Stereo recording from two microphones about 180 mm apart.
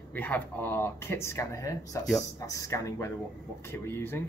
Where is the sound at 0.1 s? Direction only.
10° left (ahead or behind).